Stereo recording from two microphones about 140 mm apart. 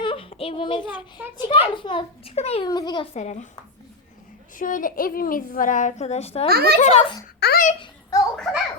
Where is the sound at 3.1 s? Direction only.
60° left (ahead or behind).